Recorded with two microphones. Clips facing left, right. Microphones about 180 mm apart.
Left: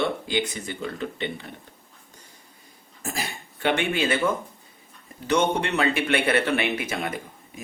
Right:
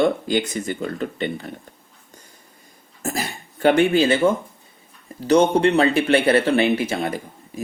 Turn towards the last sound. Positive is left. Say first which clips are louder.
# right 5 dB
turn(degrees=-35)  # may be behind; listen again after turning